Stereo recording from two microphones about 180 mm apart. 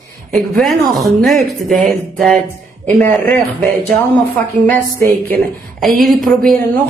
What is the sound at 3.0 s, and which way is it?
Speech, 45° right (ahead or behind).